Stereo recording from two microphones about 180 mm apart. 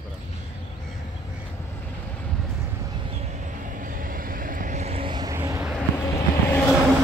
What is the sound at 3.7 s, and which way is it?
Vehicle, 50° right (ahead or behind).